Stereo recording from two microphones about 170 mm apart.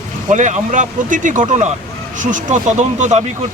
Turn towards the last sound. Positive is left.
turn(degrees=-45)  # may be behind; listen again after turning